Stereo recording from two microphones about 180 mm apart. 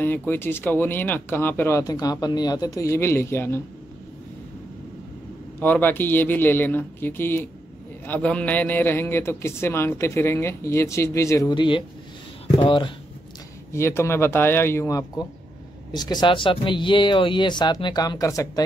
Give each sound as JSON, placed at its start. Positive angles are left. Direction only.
{"t": 0.0, "sound": "a man's voice", "side_deg": 10}
{"t": 5.6, "sound": "a man's voice", "side_deg": 10}
{"t": 13.7, "sound": "a man's voice", "side_deg": 15}